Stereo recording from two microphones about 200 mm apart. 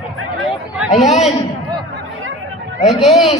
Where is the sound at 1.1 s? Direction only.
35° left (ahead or behind).